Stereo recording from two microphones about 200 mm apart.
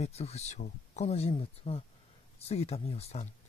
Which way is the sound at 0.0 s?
30° left (ahead or behind).